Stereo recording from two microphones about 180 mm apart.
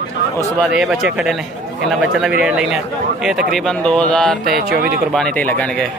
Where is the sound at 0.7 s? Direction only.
Centre (ahead or behind).